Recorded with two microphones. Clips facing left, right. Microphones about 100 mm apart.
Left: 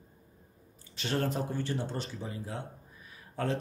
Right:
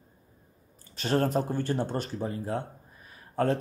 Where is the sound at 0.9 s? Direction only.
40° right (ahead or behind).